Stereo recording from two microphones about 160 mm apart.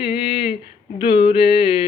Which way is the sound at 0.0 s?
35° left (ahead or behind).